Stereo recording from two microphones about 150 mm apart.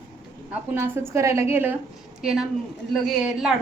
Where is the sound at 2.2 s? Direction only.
5° right (ahead or behind).